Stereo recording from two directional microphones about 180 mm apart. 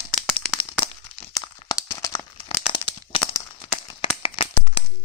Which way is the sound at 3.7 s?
30° left (ahead or behind).